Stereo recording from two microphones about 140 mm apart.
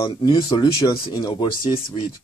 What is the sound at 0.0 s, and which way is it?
Speech, 35° left (ahead or behind).